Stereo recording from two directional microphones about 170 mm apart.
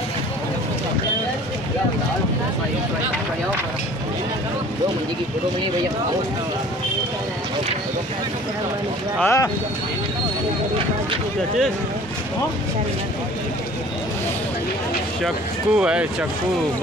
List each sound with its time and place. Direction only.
9.2 s speech: 15° left (ahead or behind)
15.2 s speech: 5° right (ahead or behind)